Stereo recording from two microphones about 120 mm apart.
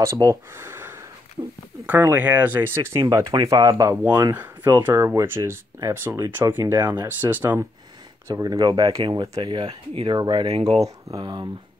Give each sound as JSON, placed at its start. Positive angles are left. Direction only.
{"t": 0.0, "sound": "speech", "side_deg": -30}
{"t": 0.6, "sound": "a sound", "side_deg": -20}
{"t": 1.9, "sound": "speech", "side_deg": -15}
{"t": 3.1, "sound": "speech", "side_deg": -30}
{"t": 3.9, "sound": "speech", "side_deg": -15}
{"t": 7.1, "sound": "speech", "side_deg": -15}
{"t": 8.3, "sound": "speech", "side_deg": -30}
{"t": 8.5, "sound": "speech", "side_deg": -40}
{"t": 10.1, "sound": "speech", "side_deg": -35}
{"t": 10.4, "sound": "speech", "side_deg": -55}
{"t": 10.8, "sound": "speech", "side_deg": -30}